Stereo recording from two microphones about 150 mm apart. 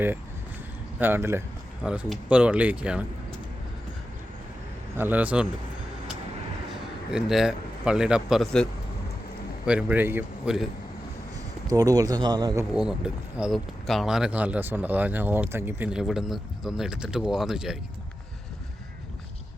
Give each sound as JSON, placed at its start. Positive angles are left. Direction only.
{"t": 0.9, "sound": "speech", "side_deg": -15}
{"t": 4.9, "sound": "speech", "side_deg": -10}
{"t": 6.7, "sound": "speech", "side_deg": -5}
{"t": 9.6, "sound": "speech", "side_deg": -10}
{"t": 11.7, "sound": "speech", "side_deg": -25}
{"t": 12.7, "sound": "speech", "side_deg": -5}